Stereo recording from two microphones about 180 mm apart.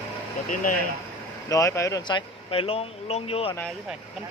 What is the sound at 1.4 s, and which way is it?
A man's voice, 15° left (ahead or behind).